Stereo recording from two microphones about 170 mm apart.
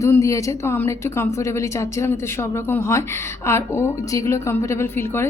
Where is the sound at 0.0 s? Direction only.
20° left (ahead or behind).